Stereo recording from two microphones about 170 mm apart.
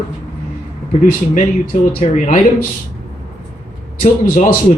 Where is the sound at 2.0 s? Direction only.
45° left (ahead or behind).